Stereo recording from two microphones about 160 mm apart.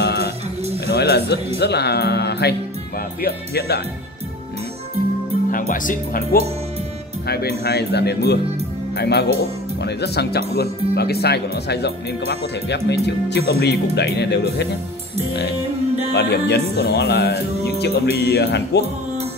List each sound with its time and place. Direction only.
0.0 s music: 90° left
1.6 s speech: 90° left
3.2 s speech: 75° left (ahead or behind)
5.5 s speech: 60° left (ahead or behind)
7.2 s speech: 85° left
16.1 s speech: 90° left